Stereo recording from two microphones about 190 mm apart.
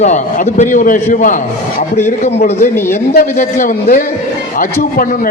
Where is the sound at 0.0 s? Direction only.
40° left (ahead or behind).